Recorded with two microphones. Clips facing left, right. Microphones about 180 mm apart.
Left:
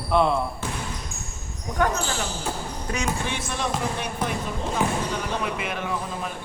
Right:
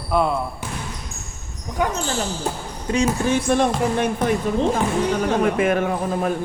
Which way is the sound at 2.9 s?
35° right (ahead or behind).